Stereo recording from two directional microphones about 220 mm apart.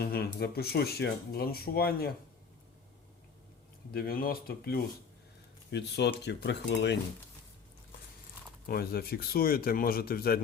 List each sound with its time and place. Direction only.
0.0 s speech: 45° left (ahead or behind)
3.9 s speech: 40° left (ahead or behind)
8.6 s speech: 45° left (ahead or behind)